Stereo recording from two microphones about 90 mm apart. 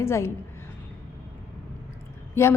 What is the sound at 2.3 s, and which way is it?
Speech, 30° left (ahead or behind).